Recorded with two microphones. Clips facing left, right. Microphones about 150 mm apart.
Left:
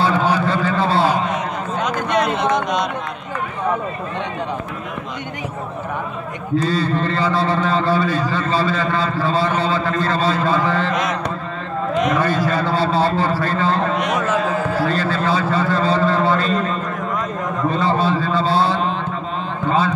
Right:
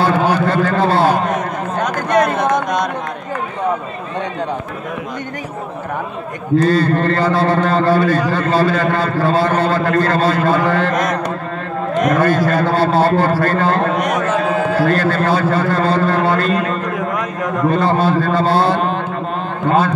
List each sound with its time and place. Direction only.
0.0 s a sound: 50° right (ahead or behind)
6.6 s a man's voice: 55° right (ahead or behind)
14.6 s a man's voice: 60° right (ahead or behind)